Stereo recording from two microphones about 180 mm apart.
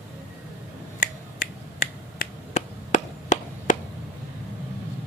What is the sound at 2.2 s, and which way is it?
Finger snapping, 40° left (ahead or behind).